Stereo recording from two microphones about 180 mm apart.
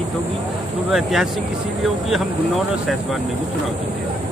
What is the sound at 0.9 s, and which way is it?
Speech, centre (ahead or behind).